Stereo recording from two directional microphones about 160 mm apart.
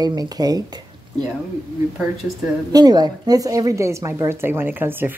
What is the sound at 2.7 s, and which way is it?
A woman's voice, 25° right (ahead or behind).